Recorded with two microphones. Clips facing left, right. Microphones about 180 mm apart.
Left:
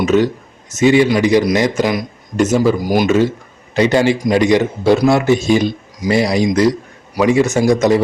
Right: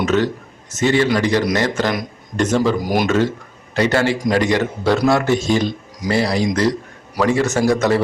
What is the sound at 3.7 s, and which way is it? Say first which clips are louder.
A man's voice: left 4 dB; 15° left (ahead or behind).